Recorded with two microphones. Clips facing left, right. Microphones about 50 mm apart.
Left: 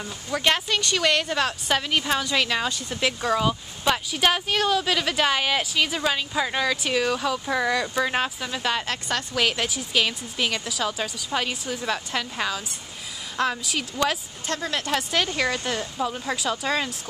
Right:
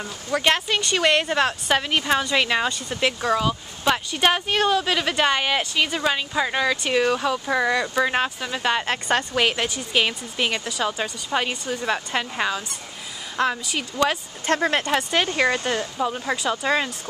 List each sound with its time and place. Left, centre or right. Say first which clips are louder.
0.0 s speech: right 2 dB; centre
8.9 s speech: right 5 dB; right; by 13.8 s centre
14.4 s speech: right 9 dB; right
15.1 s speech: right 4 dB; centre